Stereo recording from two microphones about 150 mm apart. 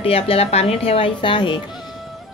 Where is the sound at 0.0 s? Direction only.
40° left (ahead or behind).